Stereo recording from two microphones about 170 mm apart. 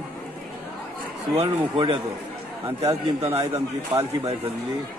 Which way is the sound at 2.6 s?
20° right (ahead or behind).